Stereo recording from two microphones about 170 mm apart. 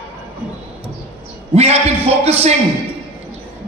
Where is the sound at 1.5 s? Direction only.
35° right (ahead or behind).